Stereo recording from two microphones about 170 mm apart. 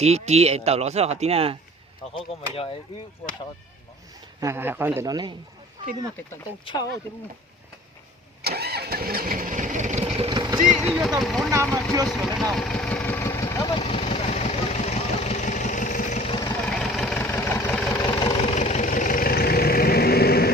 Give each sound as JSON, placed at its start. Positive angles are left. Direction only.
{"t": 0.0, "sound": "speech", "side_deg": -40}
{"t": 2.1, "sound": "speech", "side_deg": 30}
{"t": 4.4, "sound": "a man's voice", "side_deg": -15}
{"t": 8.4, "sound": "engine starting", "side_deg": -70}
{"t": 10.7, "sound": "speech", "side_deg": -5}
{"t": 11.5, "sound": "a man's voice", "side_deg": -15}
{"t": 12.0, "sound": "speech", "side_deg": 0}
{"t": 12.5, "sound": "vehicle", "side_deg": 5}
{"t": 13.7, "sound": "vehicle", "side_deg": 35}
{"t": 16.6, "sound": "vehicle", "side_deg": 0}
{"t": 17.2, "sound": "vehicle", "side_deg": 15}
{"t": 17.9, "sound": "vehicle", "side_deg": 25}
{"t": 18.5, "sound": "vehicle", "side_deg": 45}